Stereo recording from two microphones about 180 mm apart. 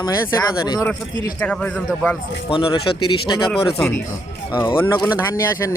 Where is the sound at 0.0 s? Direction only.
20° left (ahead or behind).